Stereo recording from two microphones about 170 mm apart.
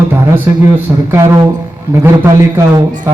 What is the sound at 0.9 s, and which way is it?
Speech, 15° right (ahead or behind).